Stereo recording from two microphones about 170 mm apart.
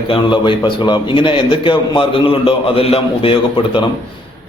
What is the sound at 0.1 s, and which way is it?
A man's voice, 30° left (ahead or behind).